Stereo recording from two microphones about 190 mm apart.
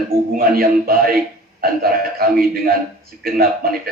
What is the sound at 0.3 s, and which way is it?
Speech, 50° right (ahead or behind).